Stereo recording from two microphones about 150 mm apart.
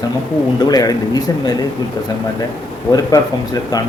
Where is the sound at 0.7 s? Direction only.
25° left (ahead or behind).